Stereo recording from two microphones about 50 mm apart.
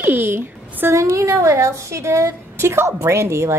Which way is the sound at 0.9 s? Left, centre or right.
Right.